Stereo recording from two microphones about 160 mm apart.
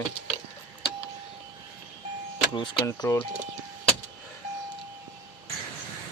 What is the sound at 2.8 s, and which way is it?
Speech, 20° left (ahead or behind).